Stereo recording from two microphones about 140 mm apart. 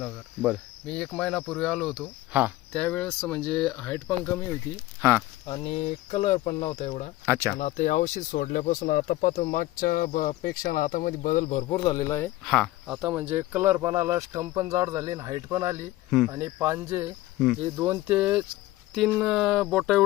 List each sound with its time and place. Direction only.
0.9 s speech: 5° left (ahead or behind)
4.9 s speech: 15° right (ahead or behind)
5.5 s speech: 45° left (ahead or behind)
7.3 s speech: 20° right (ahead or behind)
7.6 s speech: 60° left (ahead or behind)
11.4 s speech: 45° left (ahead or behind)
11.9 s speech: 25° left (ahead or behind)
12.5 s speech: centre (ahead or behind)